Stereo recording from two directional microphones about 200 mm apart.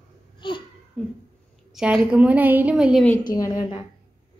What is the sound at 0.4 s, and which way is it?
Speech, 25° left (ahead or behind).